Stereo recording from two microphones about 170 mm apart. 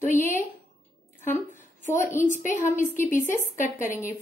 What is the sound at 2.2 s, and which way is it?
Speech, 15° left (ahead or behind).